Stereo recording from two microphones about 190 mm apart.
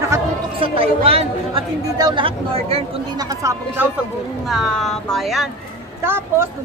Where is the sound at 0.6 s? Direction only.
30° right (ahead or behind).